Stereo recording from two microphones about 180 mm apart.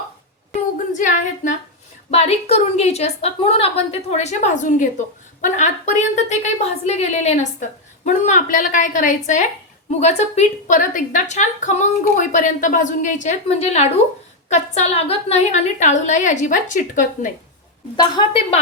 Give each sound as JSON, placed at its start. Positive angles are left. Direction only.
{"t": 0.8, "sound": "female singing", "side_deg": 45}
{"t": 2.0, "sound": "a woman's voice", "side_deg": 35}
{"t": 17.9, "sound": "a woman's voice", "side_deg": 30}